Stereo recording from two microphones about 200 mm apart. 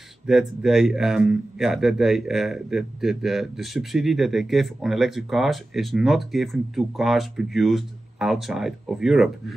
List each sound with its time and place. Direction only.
0.3 s a man's voice: centre (ahead or behind)